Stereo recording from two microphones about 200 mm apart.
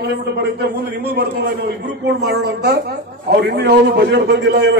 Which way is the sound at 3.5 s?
55° right (ahead or behind).